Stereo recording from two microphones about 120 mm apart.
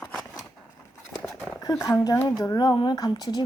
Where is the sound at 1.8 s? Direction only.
30° left (ahead or behind).